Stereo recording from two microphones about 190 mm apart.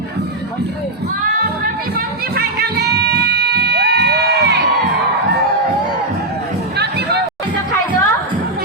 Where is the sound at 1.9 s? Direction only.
55° right (ahead or behind).